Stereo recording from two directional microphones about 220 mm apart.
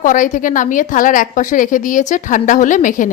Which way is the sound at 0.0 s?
35° left (ahead or behind).